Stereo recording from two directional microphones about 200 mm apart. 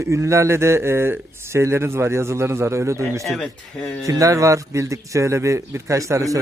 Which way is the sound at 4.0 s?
15° right (ahead or behind).